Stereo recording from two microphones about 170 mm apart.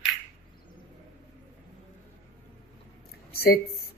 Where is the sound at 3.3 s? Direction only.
65° left (ahead or behind).